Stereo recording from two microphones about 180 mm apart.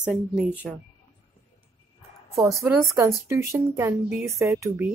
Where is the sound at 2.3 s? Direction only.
15° right (ahead or behind).